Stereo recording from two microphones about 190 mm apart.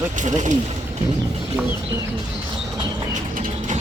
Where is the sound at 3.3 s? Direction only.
40° right (ahead or behind).